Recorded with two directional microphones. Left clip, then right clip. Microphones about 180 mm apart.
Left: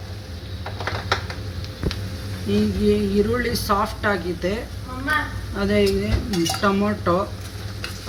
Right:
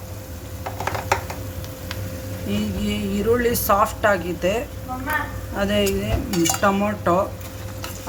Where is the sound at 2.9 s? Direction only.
45° right (ahead or behind).